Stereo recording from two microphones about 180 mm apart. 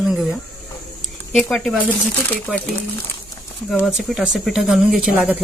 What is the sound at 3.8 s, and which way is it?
Speech, centre (ahead or behind).